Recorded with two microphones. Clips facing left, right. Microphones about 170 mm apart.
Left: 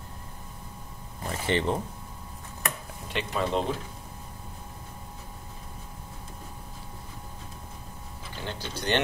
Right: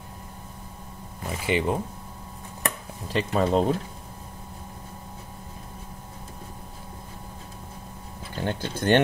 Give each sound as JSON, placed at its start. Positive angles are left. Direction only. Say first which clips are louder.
{"t": 1.4, "sound": "speech", "louder": "right 2 dB", "side_deg": -10}
{"t": 2.6, "sound": "a sound", "louder": "right 3 dB", "side_deg": -35}
{"t": 8.4, "sound": "speech", "louder": "right 7 dB", "side_deg": -50}